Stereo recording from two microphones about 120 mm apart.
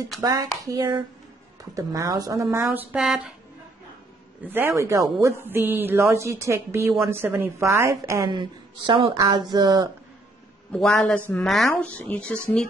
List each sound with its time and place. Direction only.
0.2 s speech: 30° right (ahead or behind)
2.7 s speech: 15° right (ahead or behind)
3.0 s speech: 5° right (ahead or behind)
4.4 s a woman's voice: 15° right (ahead or behind)
8.3 s speech: 40° right (ahead or behind)
9.1 s speech: 35° right (ahead or behind)
10.7 s a man's voice: 10° left (ahead or behind)
11.7 s a man's voice: 15° left (ahead or behind)